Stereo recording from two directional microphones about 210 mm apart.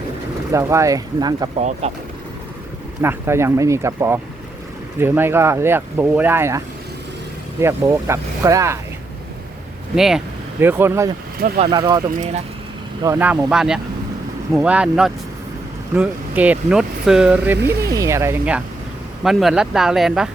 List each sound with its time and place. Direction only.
0.5 s speech: 15° right (ahead or behind)
1.5 s speech: 30° right (ahead or behind)
3.0 s speech: 10° right (ahead or behind)
7.6 s speech: 15° right (ahead or behind)
9.9 s speech: centre (ahead or behind)
11.3 s speech: 45° right (ahead or behind)
11.6 s speech: 20° right (ahead or behind)
17.6 s speech: 50° right (ahead or behind)
17.9 s speech: 15° right (ahead or behind)